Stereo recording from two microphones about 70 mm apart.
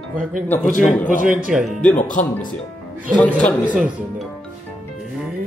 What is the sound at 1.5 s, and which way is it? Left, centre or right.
Speech, centre.